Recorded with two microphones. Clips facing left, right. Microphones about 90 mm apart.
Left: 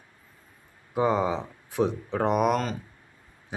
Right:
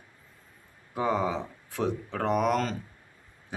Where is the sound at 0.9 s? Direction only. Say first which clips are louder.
Left 3 dB; 20° left (ahead or behind).